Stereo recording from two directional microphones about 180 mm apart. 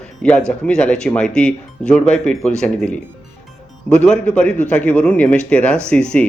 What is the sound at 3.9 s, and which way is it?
A man's voice, 5° left (ahead or behind).